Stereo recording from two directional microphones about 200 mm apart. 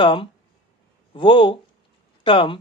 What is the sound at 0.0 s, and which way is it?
Speech, 25° left (ahead or behind).